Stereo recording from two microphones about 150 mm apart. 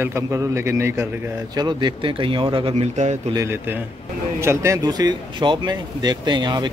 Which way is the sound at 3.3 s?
15° right (ahead or behind).